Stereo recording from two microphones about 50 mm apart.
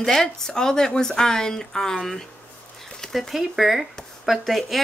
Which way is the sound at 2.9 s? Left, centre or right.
Centre.